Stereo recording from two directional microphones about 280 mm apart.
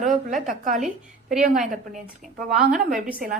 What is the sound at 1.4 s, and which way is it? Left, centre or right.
A woman's voice, right.